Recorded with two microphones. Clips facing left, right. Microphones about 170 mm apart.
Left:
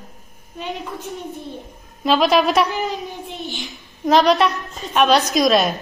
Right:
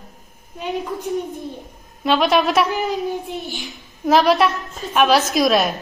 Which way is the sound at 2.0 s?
Centre (ahead or behind).